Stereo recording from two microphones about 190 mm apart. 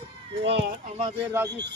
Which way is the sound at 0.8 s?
30° right (ahead or behind).